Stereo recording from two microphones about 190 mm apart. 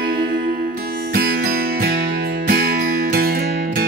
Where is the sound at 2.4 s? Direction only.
50° right (ahead or behind).